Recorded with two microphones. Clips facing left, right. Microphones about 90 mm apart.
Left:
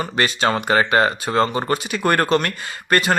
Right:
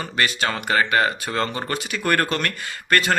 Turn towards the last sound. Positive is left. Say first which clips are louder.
# left 2 dB
turn(degrees=20)  # may be behind; listen again after turning